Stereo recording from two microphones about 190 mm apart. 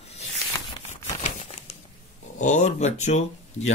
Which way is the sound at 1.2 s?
35° left (ahead or behind).